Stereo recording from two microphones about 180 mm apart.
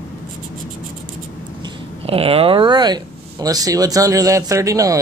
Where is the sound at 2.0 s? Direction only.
30° right (ahead or behind).